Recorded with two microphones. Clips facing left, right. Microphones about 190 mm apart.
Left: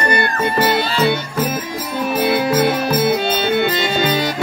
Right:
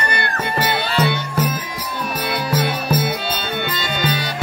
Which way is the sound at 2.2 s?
50° left (ahead or behind).